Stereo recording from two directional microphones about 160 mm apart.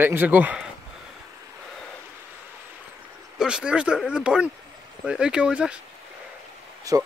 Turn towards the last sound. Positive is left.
turn(degrees=-20)  # may be behind; listen again after turning